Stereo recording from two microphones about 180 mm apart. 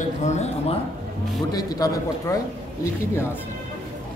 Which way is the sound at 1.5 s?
20° left (ahead or behind).